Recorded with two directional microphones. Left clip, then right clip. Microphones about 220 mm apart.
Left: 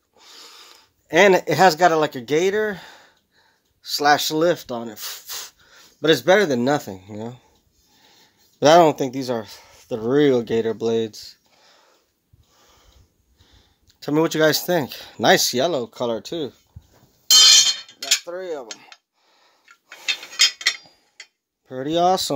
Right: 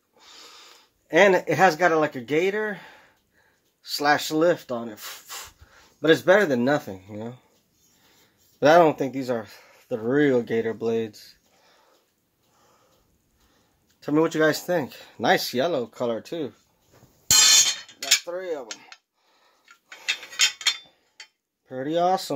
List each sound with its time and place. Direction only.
0.2 s speech: 50° left (ahead or behind)
8.5 s speech: 45° left (ahead or behind)
13.9 s speech: 45° left (ahead or behind)
18.2 s cutlery: 40° left (ahead or behind)
20.3 s a sound: 10° left (ahead or behind)
21.6 s speech: 45° left (ahead or behind)